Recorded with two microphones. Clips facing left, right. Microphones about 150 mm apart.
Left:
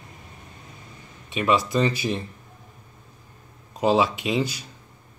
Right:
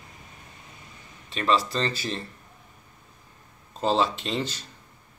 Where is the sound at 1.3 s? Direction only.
15° left (ahead or behind).